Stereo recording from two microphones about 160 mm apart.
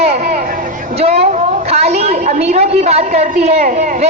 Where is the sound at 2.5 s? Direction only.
40° right (ahead or behind).